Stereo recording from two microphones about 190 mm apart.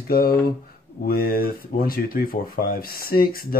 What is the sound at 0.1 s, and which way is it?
Speech, 50° left (ahead or behind).